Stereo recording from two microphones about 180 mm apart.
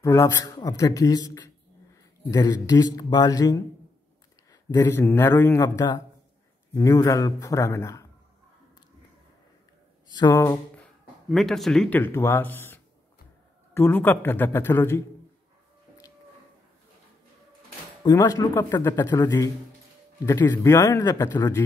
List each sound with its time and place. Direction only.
0.0 s speech: 15° left (ahead or behind)
10.0 s speech: 25° left (ahead or behind)
10.8 s speech: centre (ahead or behind)
18.0 s speech: 20° left (ahead or behind)